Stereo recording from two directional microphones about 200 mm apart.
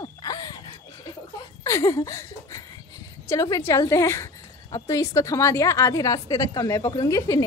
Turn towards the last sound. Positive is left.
turn(degrees=15)  # may be behind; listen again after turning